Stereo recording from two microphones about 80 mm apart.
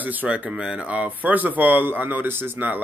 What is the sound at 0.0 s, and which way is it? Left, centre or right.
Speech, right.